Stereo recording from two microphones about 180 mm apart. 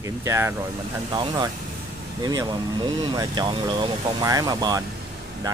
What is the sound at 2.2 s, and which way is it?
Speech, 20° right (ahead or behind).